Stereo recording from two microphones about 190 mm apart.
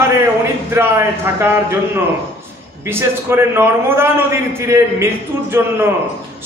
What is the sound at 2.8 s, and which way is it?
A man's voice, 10° right (ahead or behind).